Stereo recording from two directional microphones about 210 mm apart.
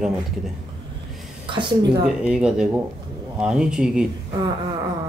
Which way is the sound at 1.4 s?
20° right (ahead or behind).